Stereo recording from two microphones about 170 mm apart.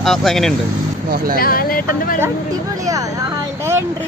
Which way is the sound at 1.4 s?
60° left (ahead or behind).